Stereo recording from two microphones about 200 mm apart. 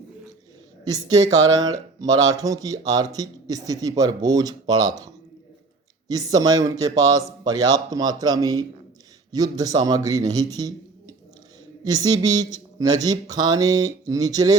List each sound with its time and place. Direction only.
0.9 s speech: 20° right (ahead or behind)
6.1 s speech: 20° right (ahead or behind)